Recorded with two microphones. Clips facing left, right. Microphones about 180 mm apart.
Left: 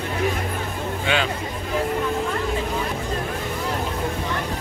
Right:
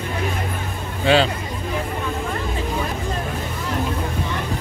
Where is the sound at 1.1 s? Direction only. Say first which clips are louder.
Right 8 dB; 35° right (ahead or behind).